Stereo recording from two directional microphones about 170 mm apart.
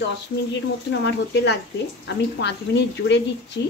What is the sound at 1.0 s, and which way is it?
Speech, 85° left.